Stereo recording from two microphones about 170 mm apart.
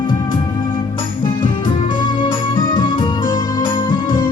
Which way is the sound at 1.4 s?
30° left (ahead or behind).